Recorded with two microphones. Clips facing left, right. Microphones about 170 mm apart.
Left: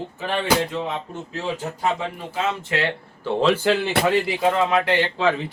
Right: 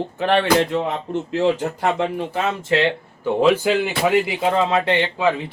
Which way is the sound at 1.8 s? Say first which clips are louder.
Right 4 dB; 70° right (ahead or behind).